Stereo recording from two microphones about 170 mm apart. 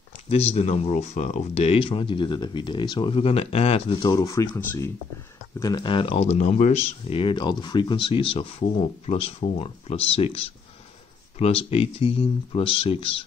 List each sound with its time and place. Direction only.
0.3 s speech: 35° left (ahead or behind)
4.1 s speech: 20° left (ahead or behind)